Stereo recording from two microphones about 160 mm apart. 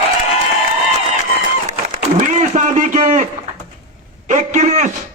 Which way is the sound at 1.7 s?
50° right (ahead or behind).